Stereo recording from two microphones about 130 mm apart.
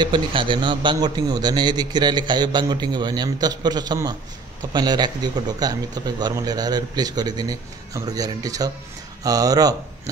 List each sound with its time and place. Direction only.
0.0 s a man's voice: 40° right (ahead or behind)